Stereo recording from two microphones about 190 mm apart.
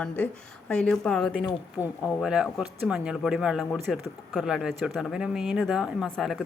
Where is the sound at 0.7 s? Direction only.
5° left (ahead or behind).